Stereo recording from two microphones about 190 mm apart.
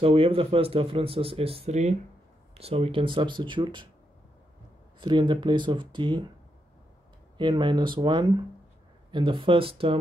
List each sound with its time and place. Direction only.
0.0 s speech: 30° right (ahead or behind)
5.0 s speech: 25° right (ahead or behind)
7.3 s speech: 25° right (ahead or behind)